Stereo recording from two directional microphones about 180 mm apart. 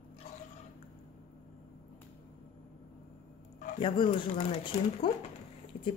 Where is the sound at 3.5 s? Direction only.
30° left (ahead or behind).